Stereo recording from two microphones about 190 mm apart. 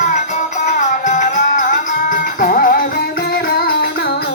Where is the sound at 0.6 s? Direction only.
40° left (ahead or behind).